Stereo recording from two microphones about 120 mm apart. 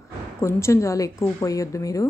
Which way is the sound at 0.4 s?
25° left (ahead or behind).